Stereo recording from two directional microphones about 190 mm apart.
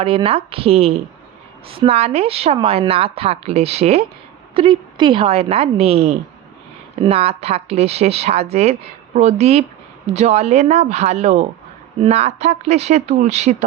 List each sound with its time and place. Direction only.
0.0 s a woman's voice: 30° right (ahead or behind)